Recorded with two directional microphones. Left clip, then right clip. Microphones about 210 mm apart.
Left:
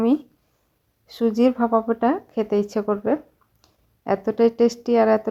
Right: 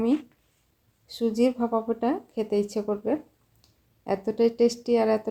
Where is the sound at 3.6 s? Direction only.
15° left (ahead or behind).